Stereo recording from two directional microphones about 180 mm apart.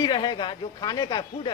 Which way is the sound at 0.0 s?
25° left (ahead or behind).